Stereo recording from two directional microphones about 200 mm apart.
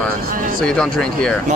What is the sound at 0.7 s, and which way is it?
Speech, 5° left (ahead or behind).